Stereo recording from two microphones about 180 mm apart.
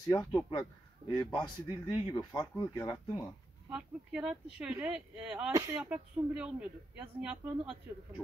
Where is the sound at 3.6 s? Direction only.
5° right (ahead or behind).